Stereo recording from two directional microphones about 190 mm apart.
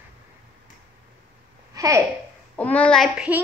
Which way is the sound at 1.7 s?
20° right (ahead or behind).